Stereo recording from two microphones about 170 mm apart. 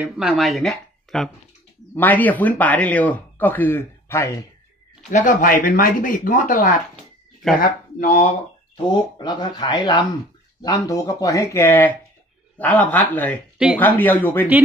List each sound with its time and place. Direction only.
0.0 s speech: centre (ahead or behind); by 4.4 s 15° left (ahead or behind)
5.1 s speech: 50° left (ahead or behind)
8.8 s speech: 25° left (ahead or behind)